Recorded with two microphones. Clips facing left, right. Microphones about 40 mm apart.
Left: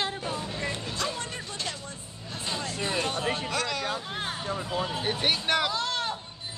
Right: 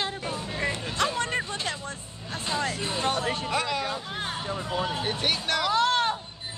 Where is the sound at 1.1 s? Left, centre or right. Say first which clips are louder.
Right 8 dB; right.